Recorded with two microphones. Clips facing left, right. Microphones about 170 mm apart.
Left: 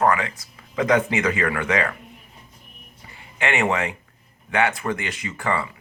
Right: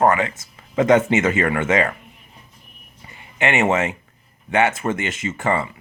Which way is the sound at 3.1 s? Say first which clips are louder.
Right 3 dB; 20° right (ahead or behind).